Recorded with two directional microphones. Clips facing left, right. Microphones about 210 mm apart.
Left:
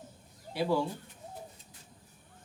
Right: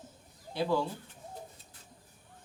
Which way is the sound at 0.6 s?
15° left (ahead or behind).